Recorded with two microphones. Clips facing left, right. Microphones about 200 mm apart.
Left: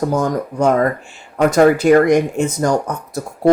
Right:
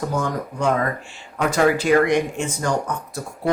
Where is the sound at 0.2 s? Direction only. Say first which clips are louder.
Left 7 dB; 40° left (ahead or behind).